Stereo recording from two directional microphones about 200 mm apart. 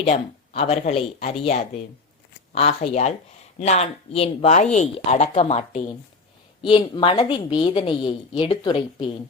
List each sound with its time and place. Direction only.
0.0 s a woman's voice: 30° left (ahead or behind)